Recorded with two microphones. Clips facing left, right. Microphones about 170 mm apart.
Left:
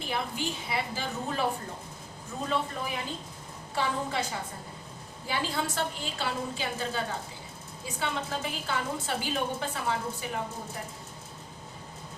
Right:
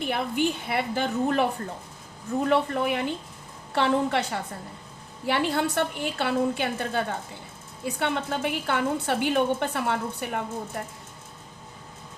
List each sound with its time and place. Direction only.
0.0 s a woman's voice: 60° right (ahead or behind)